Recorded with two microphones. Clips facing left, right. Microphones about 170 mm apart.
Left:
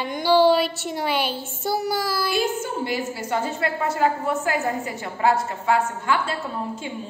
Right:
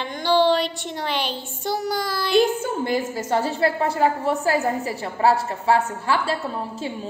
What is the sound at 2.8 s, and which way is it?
A woman's voice, 45° right (ahead or behind).